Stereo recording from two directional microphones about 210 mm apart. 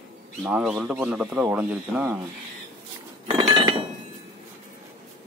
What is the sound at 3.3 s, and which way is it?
Chink, 25° right (ahead or behind).